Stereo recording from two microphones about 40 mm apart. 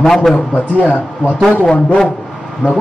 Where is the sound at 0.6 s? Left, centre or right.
Left.